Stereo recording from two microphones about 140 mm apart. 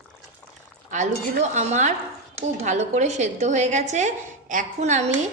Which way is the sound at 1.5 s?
55° right (ahead or behind).